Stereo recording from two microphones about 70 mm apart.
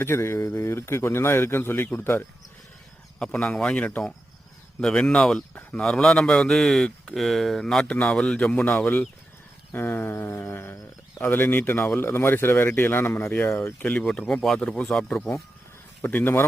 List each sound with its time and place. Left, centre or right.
0.0 s speech: left
3.2 s speech: centre
8.8 s speech: left
10.4 s a sound: left
11.2 s speech: left
13.8 s speech: centre
16.0 s speech: left